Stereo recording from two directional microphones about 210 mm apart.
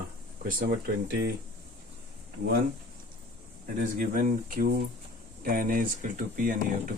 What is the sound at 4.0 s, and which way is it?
Speech, 40° right (ahead or behind).